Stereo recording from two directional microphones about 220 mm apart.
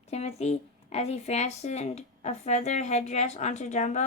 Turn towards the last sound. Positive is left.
turn(degrees=30)  # may be behind; listen again after turning